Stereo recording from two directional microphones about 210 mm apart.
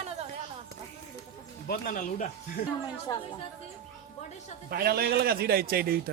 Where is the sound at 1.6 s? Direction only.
45° left (ahead or behind).